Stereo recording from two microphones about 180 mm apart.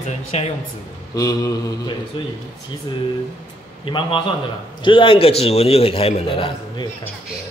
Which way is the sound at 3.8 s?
30° left (ahead or behind).